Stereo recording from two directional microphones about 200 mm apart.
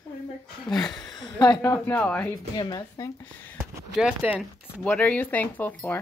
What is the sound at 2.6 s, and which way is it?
A woman's voice, 20° left (ahead or behind).